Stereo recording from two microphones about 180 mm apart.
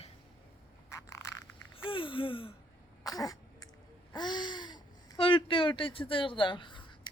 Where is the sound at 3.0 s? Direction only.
20° left (ahead or behind).